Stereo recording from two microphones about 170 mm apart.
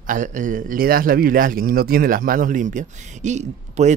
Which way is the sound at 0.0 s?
50° right (ahead or behind).